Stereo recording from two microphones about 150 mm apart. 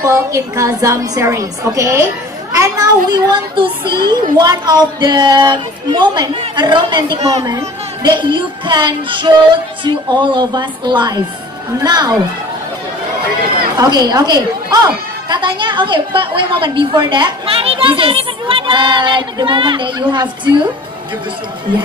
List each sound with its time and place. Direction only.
0.0 s a child's voice: 20° right (ahead or behind)
3.1 s a child's voice: 35° right (ahead or behind)
13.7 s a woman's voice: 30° right (ahead or behind)